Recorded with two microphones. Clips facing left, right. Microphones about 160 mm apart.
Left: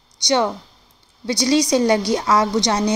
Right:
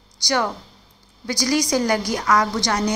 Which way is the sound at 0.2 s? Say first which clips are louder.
Left 4 dB; 20° left (ahead or behind).